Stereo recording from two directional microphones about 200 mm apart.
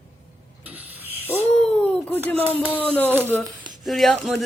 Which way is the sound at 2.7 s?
10° left (ahead or behind).